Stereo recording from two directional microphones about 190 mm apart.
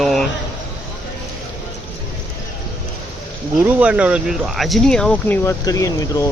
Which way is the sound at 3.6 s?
5° right (ahead or behind).